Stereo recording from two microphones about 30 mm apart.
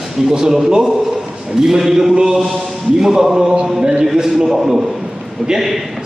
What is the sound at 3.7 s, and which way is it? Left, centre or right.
A man's voice, right.